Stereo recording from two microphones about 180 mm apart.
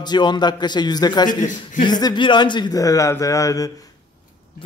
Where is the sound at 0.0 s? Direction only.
25° left (ahead or behind).